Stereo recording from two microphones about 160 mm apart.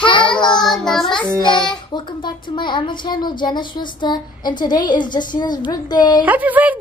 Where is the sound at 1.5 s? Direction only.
5° left (ahead or behind).